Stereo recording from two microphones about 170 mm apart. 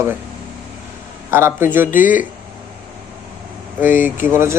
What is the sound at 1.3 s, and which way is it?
Speech, 15° right (ahead or behind).